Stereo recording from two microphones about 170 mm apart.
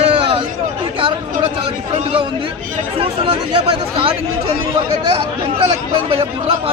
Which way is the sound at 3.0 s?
30° right (ahead or behind).